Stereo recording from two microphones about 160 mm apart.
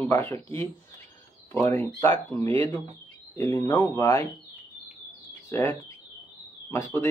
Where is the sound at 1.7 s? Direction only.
15° left (ahead or behind).